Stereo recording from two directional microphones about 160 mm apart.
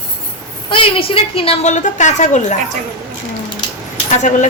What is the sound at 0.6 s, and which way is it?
A woman's voice, 35° left (ahead or behind).